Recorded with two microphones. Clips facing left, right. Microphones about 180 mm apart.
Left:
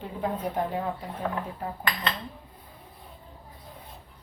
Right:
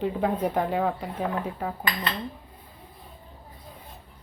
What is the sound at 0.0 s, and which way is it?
Speech, 90° right.